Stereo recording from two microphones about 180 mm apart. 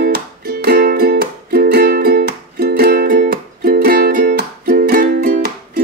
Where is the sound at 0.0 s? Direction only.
60° right (ahead or behind).